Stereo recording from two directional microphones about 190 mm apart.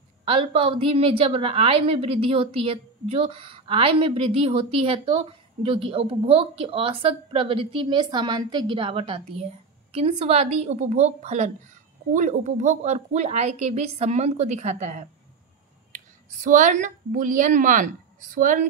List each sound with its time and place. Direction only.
0.2 s a woman's voice: 30° right (ahead or behind)
16.4 s a woman's voice: 40° right (ahead or behind)